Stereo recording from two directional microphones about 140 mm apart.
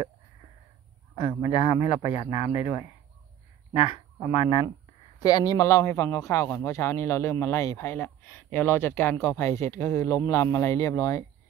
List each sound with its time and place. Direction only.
1.4 s speech: 45° left (ahead or behind)
4.4 s speech: 35° left (ahead or behind)
5.2 s speech: 25° left (ahead or behind)